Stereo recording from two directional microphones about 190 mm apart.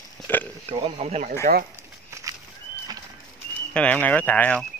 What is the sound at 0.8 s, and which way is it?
Speech, 35° right (ahead or behind).